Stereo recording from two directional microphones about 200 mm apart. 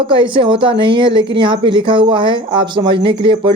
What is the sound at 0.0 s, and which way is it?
A woman's voice, 25° right (ahead or behind).